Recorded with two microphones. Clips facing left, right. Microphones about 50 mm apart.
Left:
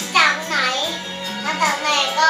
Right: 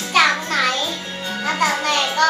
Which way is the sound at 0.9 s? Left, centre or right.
Left.